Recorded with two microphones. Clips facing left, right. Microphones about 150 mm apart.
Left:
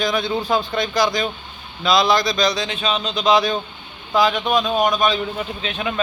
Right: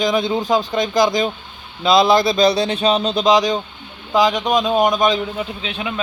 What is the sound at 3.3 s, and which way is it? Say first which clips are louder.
A man's voice: right 1 dB; 15° right (ahead or behind).